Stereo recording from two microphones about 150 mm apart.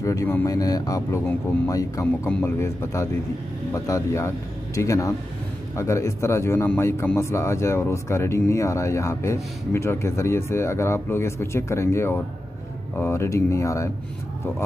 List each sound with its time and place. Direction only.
0.0 s a man's voice: 20° left (ahead or behind)